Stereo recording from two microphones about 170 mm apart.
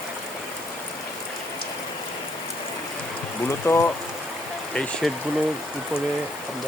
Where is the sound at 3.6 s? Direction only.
15° left (ahead or behind).